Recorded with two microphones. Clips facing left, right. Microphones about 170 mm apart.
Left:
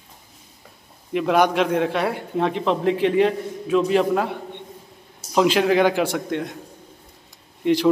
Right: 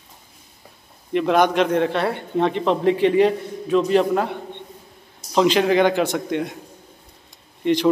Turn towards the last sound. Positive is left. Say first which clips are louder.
# even
turn(degrees=5)  # may be behind; listen again after turning